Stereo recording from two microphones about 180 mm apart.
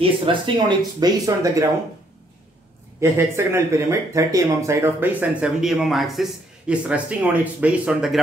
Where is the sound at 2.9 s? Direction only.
15° right (ahead or behind).